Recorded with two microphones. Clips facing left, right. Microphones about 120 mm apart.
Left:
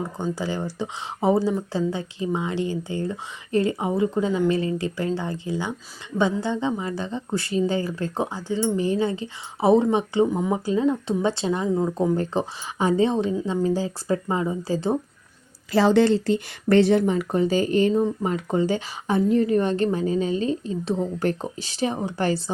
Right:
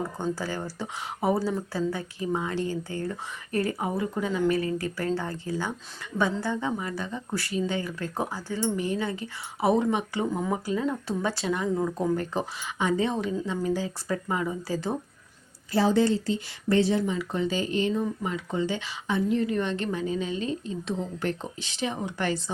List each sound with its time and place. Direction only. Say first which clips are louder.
0.3 s speech: left 5 dB; 15° left (ahead or behind)
15.7 s speech: left 5 dB; 85° left; by 22.4 s 35° left (ahead or behind)